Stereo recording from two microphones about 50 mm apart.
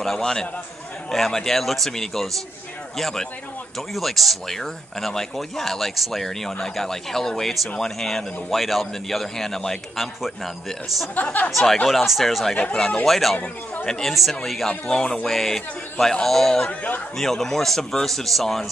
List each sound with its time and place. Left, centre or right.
0.0 s speech: centre
11.5 s speech: centre
13.8 s speech: centre
14.1 s speech: centre
14.7 s speech: centre
15.2 s speech: centre